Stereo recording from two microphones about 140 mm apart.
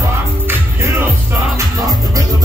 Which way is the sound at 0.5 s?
15° right (ahead or behind).